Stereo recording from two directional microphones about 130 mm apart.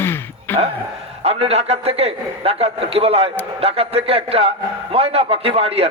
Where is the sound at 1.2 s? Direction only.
50° right (ahead or behind).